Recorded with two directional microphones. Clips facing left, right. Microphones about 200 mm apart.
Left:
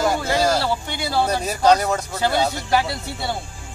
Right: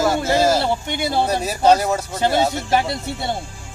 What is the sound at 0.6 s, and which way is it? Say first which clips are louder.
Speech: right 3 dB; 20° right (ahead or behind).